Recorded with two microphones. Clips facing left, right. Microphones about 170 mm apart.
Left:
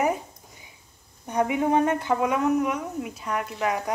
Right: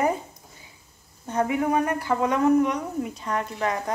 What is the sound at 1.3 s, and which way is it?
Speech, 15° left (ahead or behind).